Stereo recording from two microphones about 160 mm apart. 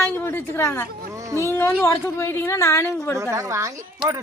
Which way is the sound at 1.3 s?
15° left (ahead or behind).